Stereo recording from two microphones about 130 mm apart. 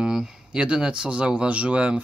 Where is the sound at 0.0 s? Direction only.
5° right (ahead or behind).